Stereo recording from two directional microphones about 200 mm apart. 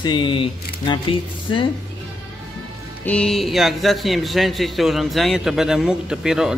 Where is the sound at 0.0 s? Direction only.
25° left (ahead or behind).